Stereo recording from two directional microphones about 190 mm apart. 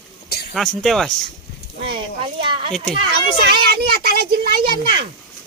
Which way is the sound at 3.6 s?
55° right (ahead or behind).